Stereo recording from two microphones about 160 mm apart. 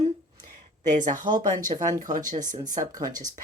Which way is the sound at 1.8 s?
50° right (ahead or behind).